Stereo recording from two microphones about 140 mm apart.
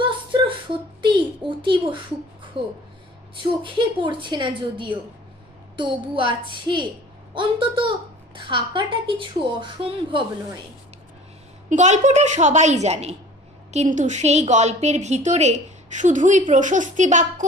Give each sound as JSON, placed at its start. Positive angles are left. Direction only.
{"t": 0.0, "sound": "a sound", "side_deg": -35}
{"t": 2.5, "sound": "speech", "side_deg": -40}
{"t": 11.7, "sound": "a woman's voice", "side_deg": -55}